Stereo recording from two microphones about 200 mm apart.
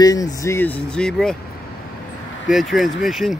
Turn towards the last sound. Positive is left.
turn(degrees=0)  # may be behind; listen again after turning